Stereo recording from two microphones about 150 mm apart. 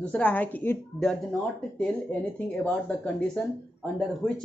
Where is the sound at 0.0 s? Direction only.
10° left (ahead or behind).